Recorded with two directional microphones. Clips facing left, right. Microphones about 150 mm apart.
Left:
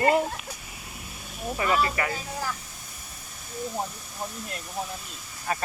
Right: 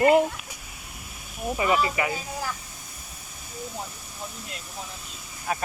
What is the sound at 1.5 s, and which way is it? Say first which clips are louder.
Speech: right 1 dB; 15° right (ahead or behind).